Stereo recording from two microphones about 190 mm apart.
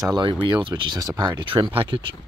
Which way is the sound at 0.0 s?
20° right (ahead or behind).